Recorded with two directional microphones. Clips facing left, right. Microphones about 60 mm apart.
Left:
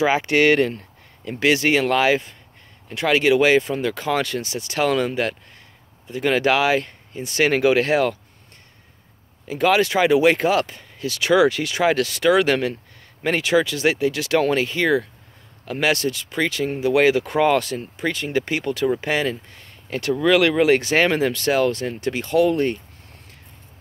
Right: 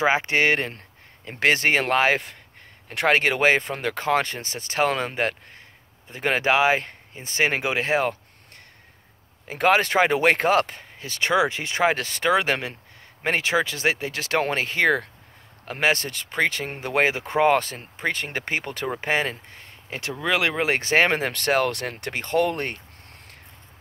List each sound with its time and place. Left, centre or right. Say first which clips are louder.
0.0 s speech: left 3 dB; right
0.7 s a sound: left 5 dB; right
1.4 s speech: left 2 dB; right
2.9 s speech: left 3 dB; right
9.5 s speech: left 2 dB; right
19.9 s speech: left 7 dB; centre
21.3 s speech: left 3 dB; right